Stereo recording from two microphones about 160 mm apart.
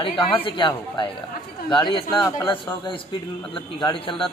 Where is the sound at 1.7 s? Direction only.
30° left (ahead or behind).